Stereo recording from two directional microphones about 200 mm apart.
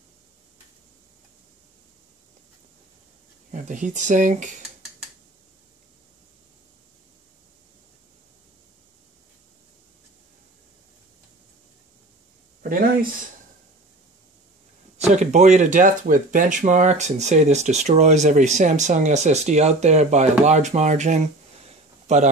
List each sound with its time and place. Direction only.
3.5 s speech: 40° right (ahead or behind)
15.0 s speech: 35° right (ahead or behind)
22.0 s a sound: 35° right (ahead or behind)